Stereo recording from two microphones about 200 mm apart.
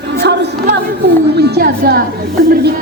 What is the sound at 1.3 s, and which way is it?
Speech, 55° right (ahead or behind).